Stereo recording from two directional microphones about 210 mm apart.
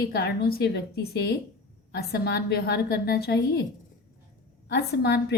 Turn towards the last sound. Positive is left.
turn(degrees=55)  # may be behind; listen again after turning